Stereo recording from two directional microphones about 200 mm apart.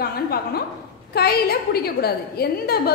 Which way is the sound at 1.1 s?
50° left (ahead or behind).